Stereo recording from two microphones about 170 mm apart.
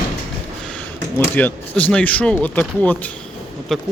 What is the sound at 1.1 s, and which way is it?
Speech, 10° left (ahead or behind).